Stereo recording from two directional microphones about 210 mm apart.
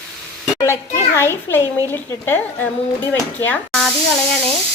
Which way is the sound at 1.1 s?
10° left (ahead or behind).